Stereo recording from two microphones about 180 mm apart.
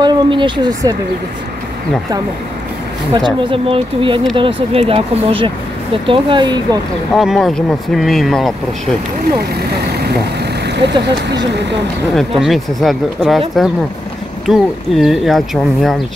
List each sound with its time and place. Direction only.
0.0 s speech: 25° right (ahead or behind)
3.2 s speech: 25° right (ahead or behind)
7.2 s speech: centre (ahead or behind)
10.8 s speech: 75° right (ahead or behind)
12.2 s speech: centre (ahead or behind)
14.4 s speech: centre (ahead or behind)